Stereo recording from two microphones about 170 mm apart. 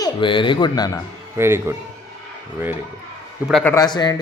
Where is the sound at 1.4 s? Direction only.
15° right (ahead or behind).